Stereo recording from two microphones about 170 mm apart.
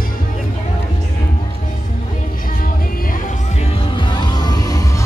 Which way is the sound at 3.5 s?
30° left (ahead or behind).